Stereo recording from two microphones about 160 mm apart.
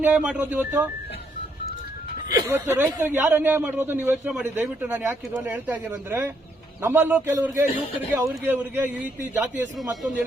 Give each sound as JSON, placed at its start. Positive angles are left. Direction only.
{"t": 0.0, "sound": "speech", "side_deg": -10}
{"t": 2.3, "sound": "speech", "side_deg": -25}
{"t": 2.6, "sound": "speech", "side_deg": -10}